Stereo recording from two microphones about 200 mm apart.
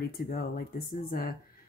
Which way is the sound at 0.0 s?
50° left (ahead or behind).